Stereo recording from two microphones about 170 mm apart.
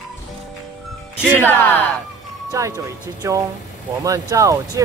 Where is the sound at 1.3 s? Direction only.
10° left (ahead or behind).